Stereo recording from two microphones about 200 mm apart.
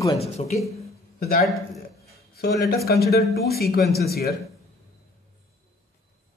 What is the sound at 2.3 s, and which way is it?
Speech, 50° left (ahead or behind).